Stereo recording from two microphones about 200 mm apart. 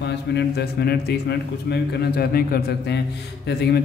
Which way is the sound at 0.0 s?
55° left (ahead or behind).